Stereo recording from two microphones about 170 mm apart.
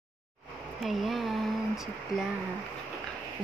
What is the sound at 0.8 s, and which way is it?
Speech, centre (ahead or behind).